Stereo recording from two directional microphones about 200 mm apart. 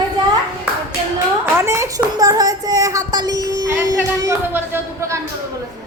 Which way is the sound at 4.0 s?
10° right (ahead or behind).